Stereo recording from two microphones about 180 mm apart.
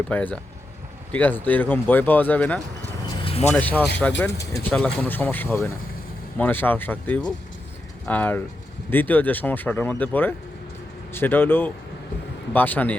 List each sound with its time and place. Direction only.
0.1 s speech: 10° left (ahead or behind)
3.2 s a sound: 30° left (ahead or behind)
3.5 s speech: 10° left (ahead or behind)
4.7 s speech: 5° left (ahead or behind)